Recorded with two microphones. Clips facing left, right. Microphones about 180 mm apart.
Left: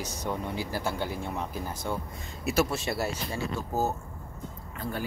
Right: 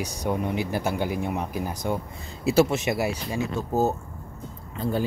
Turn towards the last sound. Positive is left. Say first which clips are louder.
# right 7 dB
turn(degrees=-25)  # may be behind; listen again after turning